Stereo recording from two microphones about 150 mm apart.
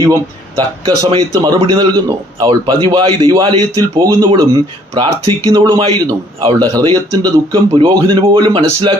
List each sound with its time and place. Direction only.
0.0 s a man's voice: 25° right (ahead or behind)
5.5 s a man's voice: 30° right (ahead or behind)